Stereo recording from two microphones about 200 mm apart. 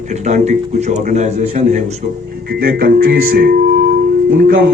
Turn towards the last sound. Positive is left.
turn(degrees=-45)  # may be behind; listen again after turning